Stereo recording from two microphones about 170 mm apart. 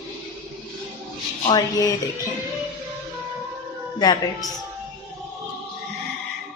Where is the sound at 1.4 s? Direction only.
25° left (ahead or behind).